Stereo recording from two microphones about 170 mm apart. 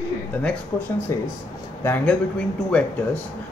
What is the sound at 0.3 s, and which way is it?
Speech, 10° left (ahead or behind).